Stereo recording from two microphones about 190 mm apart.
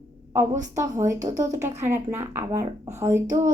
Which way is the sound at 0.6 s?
15° right (ahead or behind).